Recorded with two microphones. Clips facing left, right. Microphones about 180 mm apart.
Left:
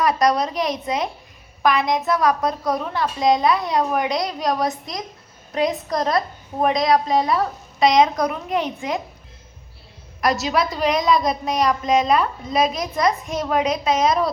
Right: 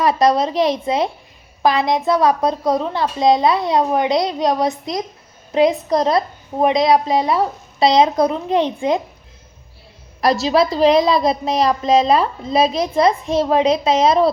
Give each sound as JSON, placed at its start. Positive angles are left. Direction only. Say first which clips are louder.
{"t": 0.0, "sound": "a woman's voice", "louder": "right 3 dB", "side_deg": -25}
{"t": 10.4, "sound": "a woman's voice", "louder": "right 7 dB", "side_deg": -30}